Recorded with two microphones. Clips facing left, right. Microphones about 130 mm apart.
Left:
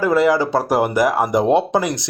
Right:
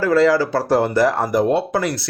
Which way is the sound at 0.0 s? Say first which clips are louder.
Even; 15° left (ahead or behind).